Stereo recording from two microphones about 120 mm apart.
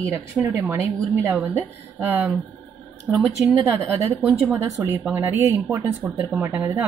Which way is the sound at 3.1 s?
5° right (ahead or behind).